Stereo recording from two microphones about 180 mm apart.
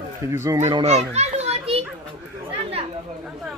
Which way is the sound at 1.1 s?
35° right (ahead or behind).